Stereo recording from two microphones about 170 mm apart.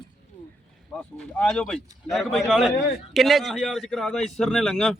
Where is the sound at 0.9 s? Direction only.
5° left (ahead or behind).